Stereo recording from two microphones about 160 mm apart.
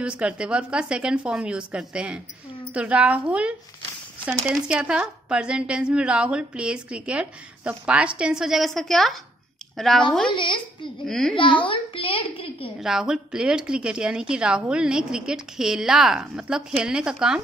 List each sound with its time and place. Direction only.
0.0 s a woman's voice: 5° right (ahead or behind)
10.3 s a woman's voice: 30° left (ahead or behind)
11.1 s a woman's voice: 5° left (ahead or behind)
11.6 s a woman's voice: 35° left (ahead or behind)
12.8 s a woman's voice: 5° right (ahead or behind)